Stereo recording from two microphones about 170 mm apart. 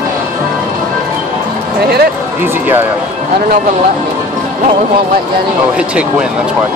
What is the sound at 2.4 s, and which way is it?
Speech, 10° right (ahead or behind).